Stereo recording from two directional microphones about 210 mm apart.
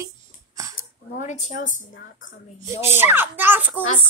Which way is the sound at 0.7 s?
35° left (ahead or behind).